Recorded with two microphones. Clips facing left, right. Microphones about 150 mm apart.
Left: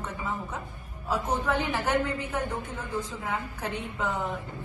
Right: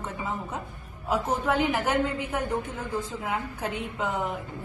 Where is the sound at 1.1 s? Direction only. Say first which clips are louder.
Right 2 dB; 20° right (ahead or behind).